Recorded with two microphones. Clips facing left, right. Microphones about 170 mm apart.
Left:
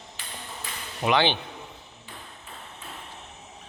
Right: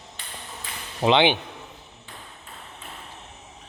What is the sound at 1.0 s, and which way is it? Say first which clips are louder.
Speech: right 4 dB; 20° right (ahead or behind).